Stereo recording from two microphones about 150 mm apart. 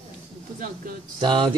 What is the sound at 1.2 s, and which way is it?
Speech, 35° right (ahead or behind).